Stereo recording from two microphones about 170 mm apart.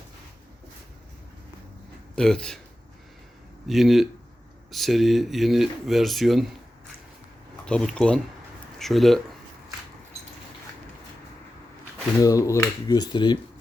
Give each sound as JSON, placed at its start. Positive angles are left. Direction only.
{"t": 2.1, "sound": "speech", "side_deg": 5}
{"t": 3.7, "sound": "speech", "side_deg": 0}
{"t": 7.6, "sound": "speech", "side_deg": 5}
{"t": 12.2, "sound": "speech", "side_deg": 20}